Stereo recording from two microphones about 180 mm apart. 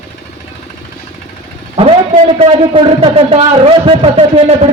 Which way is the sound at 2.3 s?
35° right (ahead or behind).